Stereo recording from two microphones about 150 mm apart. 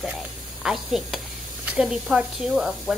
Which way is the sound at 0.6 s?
Centre (ahead or behind).